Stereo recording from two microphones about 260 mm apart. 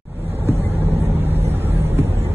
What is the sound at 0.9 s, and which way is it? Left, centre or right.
Vehicle, right.